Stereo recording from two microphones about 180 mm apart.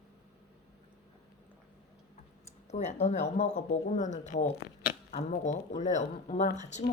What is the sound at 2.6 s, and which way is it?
Speech, 40° left (ahead or behind).